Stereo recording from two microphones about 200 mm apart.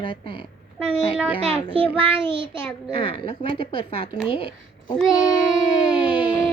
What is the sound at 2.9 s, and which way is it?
A woman's voice, 25° left (ahead or behind).